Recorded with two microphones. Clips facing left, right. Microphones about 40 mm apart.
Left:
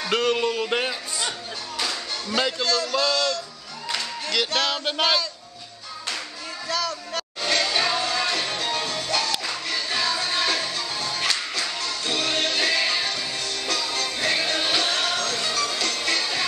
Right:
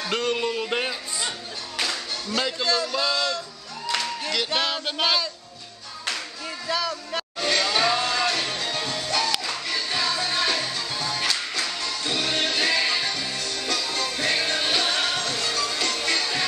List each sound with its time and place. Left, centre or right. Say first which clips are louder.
0.0 s music: left 3 dB; centre
2.2 s a man's voice: left 3 dB; centre
2.6 s music: left 1 dB; centre
3.9 s music: even; centre
4.8 s music: left 1 dB; centre
6.7 s speech: even; centre
7.4 s music: right 1 dB; centre